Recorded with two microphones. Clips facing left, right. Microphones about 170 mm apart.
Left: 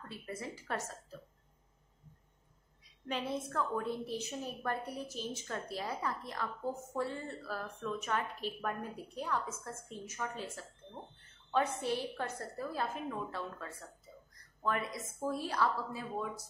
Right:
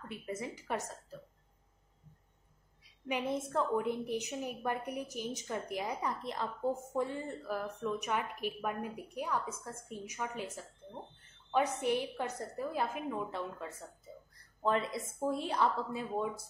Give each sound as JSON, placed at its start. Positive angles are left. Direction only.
{"t": 0.1, "sound": "a woman's voice", "side_deg": -20}
{"t": 3.1, "sound": "a woman's voice", "side_deg": -15}
{"t": 3.3, "sound": "a woman's voice", "side_deg": -25}